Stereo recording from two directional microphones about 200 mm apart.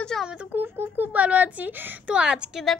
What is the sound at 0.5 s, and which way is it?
Speech, 10° right (ahead or behind).